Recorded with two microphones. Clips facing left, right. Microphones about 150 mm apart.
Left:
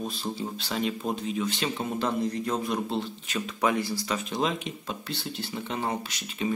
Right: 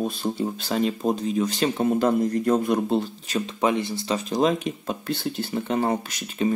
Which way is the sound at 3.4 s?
25° right (ahead or behind).